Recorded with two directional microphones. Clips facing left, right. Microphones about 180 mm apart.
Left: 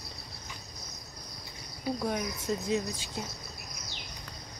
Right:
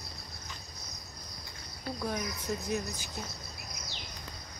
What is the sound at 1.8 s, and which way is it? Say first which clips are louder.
Speech: left 4 dB; 15° left (ahead or behind).